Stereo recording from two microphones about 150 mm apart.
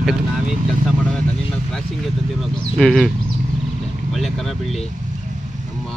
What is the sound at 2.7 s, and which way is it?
Speech, centre (ahead or behind).